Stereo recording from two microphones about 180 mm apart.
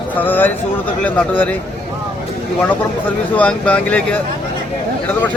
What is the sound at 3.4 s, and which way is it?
Speech, 5° left (ahead or behind).